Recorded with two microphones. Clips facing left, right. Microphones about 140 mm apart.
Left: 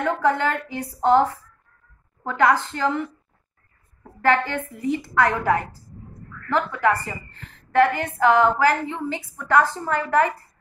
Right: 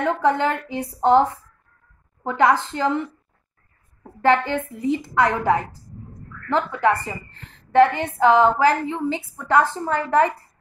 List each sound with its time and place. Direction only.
0.0 s a woman's voice: 20° right (ahead or behind)
4.2 s a woman's voice: 25° right (ahead or behind)